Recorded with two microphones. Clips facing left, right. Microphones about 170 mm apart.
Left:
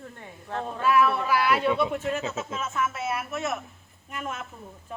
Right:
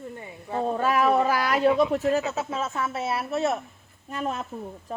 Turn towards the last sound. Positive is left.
turn(degrees=-35)  # may be behind; listen again after turning